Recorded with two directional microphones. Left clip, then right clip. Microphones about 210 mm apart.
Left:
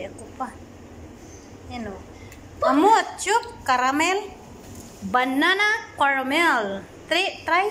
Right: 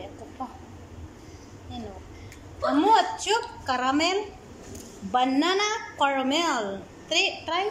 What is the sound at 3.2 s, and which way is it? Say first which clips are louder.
A woman's voice: left 4 dB; 5° right (ahead or behind).